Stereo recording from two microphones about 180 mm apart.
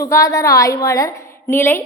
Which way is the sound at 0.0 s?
20° left (ahead or behind).